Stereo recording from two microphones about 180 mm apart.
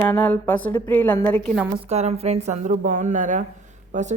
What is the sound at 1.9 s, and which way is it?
A woman's voice, 35° right (ahead or behind).